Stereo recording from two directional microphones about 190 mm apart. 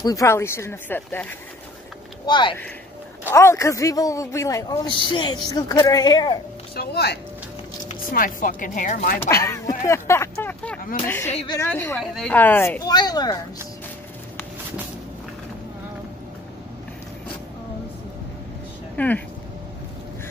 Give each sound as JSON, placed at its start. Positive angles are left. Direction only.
{"t": 0.0, "sound": "a man's voice", "side_deg": 15}
{"t": 2.2, "sound": "a man's voice", "side_deg": 25}
{"t": 6.7, "sound": "speech", "side_deg": 55}
{"t": 7.9, "sound": "speech", "side_deg": 45}
{"t": 9.3, "sound": "a man's voice", "side_deg": 15}
{"t": 18.9, "sound": "a man's voice", "side_deg": 10}